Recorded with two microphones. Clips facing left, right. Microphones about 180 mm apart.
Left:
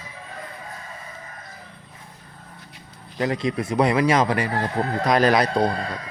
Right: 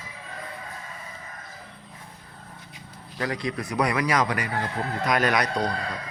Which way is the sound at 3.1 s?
20° left (ahead or behind).